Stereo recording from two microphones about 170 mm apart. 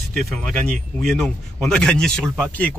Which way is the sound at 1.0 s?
5° left (ahead or behind).